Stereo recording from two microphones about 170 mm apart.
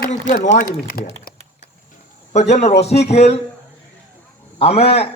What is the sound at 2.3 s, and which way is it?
A man's voice, 40° left (ahead or behind).